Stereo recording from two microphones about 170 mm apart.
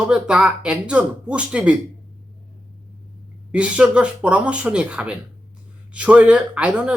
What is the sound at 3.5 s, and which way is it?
Speech, 5° right (ahead or behind).